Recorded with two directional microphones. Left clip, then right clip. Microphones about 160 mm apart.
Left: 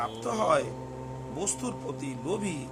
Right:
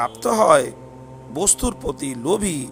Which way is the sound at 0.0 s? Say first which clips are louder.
Right 12 dB; 60° right (ahead or behind).